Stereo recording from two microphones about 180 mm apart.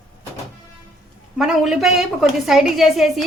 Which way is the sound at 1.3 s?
Centre (ahead or behind).